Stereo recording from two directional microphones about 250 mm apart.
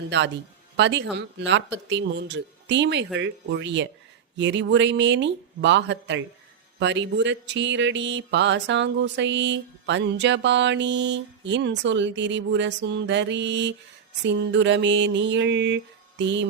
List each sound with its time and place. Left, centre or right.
0.1 s mantra: right